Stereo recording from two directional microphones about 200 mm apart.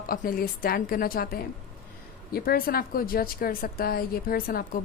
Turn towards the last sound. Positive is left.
turn(degrees=45)  # may be behind; listen again after turning